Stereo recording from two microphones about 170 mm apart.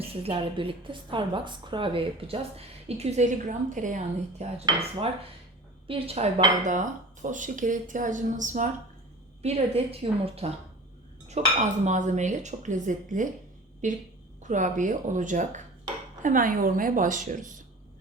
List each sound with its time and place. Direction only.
0.0 s a woman's voice: 35° right (ahead or behind)
6.7 s speech: 45° right (ahead or behind)
9.4 s a woman's voice: 35° right (ahead or behind)